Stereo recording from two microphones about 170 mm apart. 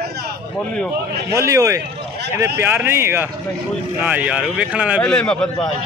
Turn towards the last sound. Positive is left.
turn(degrees=5)  # may be behind; listen again after turning